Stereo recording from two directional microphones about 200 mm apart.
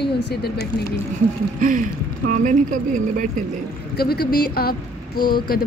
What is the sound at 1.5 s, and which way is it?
Speech, 40° right (ahead or behind).